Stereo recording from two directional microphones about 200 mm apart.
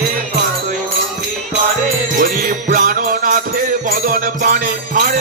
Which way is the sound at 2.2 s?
45° right (ahead or behind).